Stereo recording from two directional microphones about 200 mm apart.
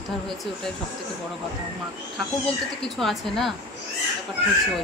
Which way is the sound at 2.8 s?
Centre (ahead or behind).